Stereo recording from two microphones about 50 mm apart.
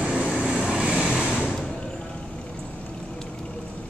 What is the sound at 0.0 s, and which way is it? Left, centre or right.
Vehicle, right.